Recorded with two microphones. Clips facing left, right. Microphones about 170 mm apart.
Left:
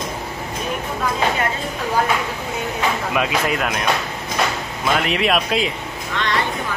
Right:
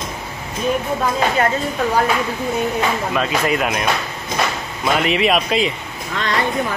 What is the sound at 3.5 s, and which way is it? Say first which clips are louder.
Speech: right 2 dB; 5° right (ahead or behind).